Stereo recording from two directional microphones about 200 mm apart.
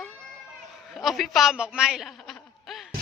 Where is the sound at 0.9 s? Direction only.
Centre (ahead or behind).